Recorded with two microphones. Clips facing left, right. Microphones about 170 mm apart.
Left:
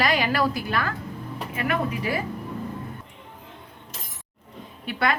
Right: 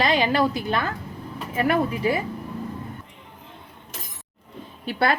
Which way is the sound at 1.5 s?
35° right (ahead or behind).